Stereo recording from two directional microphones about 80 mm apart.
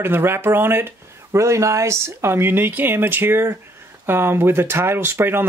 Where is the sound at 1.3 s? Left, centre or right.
Right.